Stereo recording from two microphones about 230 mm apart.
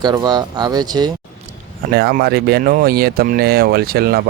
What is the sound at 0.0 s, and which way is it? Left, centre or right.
Speech, centre.